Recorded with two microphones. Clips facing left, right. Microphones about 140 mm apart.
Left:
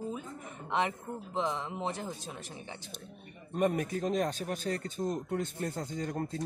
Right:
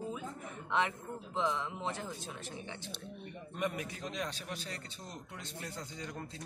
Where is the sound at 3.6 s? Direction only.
45° left (ahead or behind).